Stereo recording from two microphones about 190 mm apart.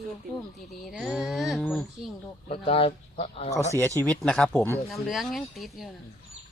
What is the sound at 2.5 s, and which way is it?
Speech, 30° left (ahead or behind).